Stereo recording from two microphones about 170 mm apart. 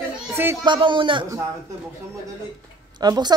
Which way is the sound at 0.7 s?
30° right (ahead or behind).